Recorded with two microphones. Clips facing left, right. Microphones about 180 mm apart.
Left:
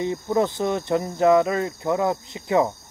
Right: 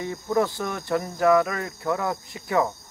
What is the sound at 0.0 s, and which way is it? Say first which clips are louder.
Speech: left 2 dB; 20° left (ahead or behind).